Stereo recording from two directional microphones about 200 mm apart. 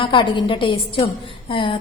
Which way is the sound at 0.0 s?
25° left (ahead or behind).